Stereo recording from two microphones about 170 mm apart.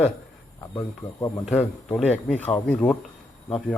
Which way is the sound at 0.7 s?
15° left (ahead or behind).